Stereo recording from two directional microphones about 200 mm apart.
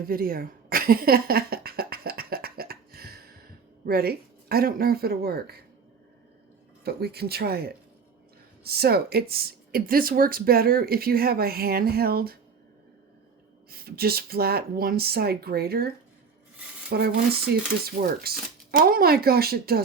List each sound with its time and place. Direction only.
0.0 s a sound: 45° right (ahead or behind)
3.8 s speech: 50° right (ahead or behind)
6.8 s speech: 50° right (ahead or behind)
13.7 s speech: 50° right (ahead or behind)
16.9 s speech: 50° right (ahead or behind)